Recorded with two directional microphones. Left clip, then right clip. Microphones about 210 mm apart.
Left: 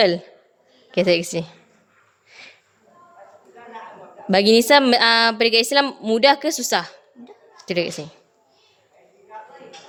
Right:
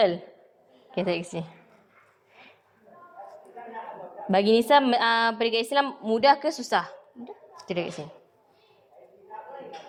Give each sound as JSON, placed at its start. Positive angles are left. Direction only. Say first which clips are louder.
{"t": 0.9, "sound": "a woman's voice", "louder": "left 10 dB", "side_deg": 45}
{"t": 2.3, "sound": "a sound", "louder": "left 9 dB", "side_deg": 40}
{"t": 4.3, "sound": "a woman's voice", "louder": "left 6 dB", "side_deg": 40}